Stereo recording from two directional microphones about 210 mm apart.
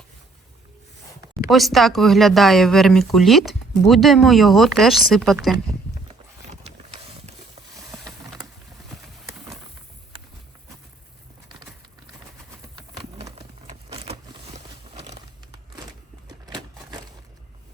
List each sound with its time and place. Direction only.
1.5 s speech: centre (ahead or behind)
7.8 s vehicle: 15° right (ahead or behind)
13.2 s a sound: 25° right (ahead or behind)